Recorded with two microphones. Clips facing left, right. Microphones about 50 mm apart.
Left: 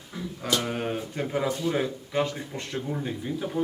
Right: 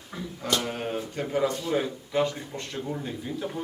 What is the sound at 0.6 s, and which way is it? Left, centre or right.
Speech, centre.